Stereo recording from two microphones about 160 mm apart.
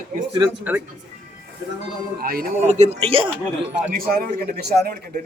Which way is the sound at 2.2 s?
65° right (ahead or behind).